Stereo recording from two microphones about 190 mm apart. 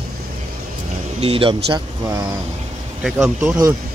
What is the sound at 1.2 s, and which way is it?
Speech, 30° right (ahead or behind).